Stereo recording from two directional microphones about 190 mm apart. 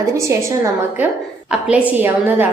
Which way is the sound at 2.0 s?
10° right (ahead or behind).